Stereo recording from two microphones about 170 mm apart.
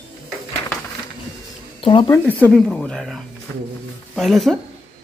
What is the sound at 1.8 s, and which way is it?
Speech, 30° left (ahead or behind).